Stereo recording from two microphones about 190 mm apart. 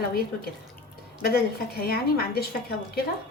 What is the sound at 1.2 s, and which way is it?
A woman's voice, 55° left (ahead or behind).